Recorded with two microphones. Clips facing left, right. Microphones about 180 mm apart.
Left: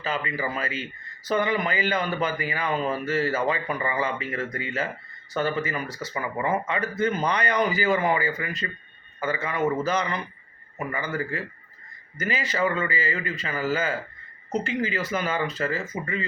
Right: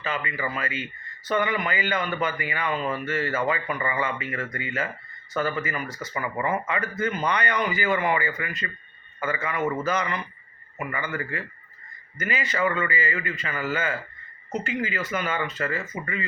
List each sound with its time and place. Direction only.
0.0 s speech: 35° left (ahead or behind)